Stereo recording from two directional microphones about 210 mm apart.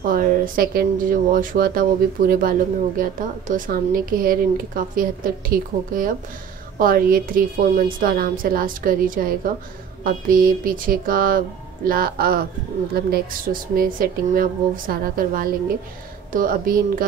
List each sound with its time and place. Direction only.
0.1 s a woman's voice: 45° right (ahead or behind)